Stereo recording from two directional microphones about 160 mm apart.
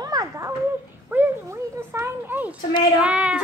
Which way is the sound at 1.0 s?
15° right (ahead or behind).